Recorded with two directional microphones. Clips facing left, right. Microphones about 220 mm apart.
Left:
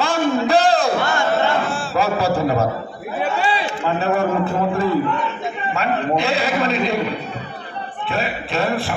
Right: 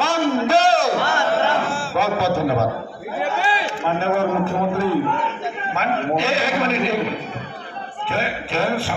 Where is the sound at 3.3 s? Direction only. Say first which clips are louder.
Left 2 dB; 45° left (ahead or behind).